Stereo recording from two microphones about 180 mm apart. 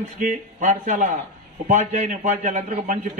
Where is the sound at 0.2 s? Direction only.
45° right (ahead or behind).